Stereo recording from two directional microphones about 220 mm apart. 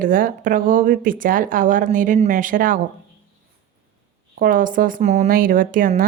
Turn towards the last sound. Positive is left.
turn(degrees=-40)  # may be behind; listen again after turning